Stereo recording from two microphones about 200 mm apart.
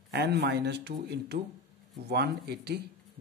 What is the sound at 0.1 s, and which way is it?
Speech, 55° right (ahead or behind).